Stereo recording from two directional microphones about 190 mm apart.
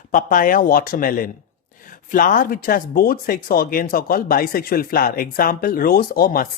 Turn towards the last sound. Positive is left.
turn(degrees=50)  # may be behind; listen again after turning